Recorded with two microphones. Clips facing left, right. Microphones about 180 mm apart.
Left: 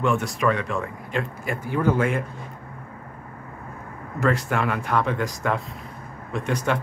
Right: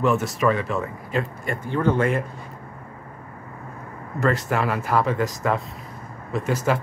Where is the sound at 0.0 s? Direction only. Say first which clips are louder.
Right 2 dB; centre (ahead or behind).